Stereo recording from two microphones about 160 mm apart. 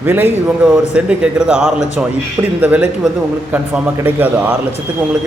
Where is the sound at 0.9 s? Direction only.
5° right (ahead or behind).